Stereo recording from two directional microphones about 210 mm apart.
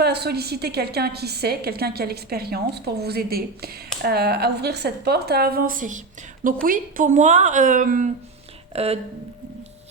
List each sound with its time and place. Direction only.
0.0 s a woman's voice: 50° right (ahead or behind); by 9.0 s 30° right (ahead or behind)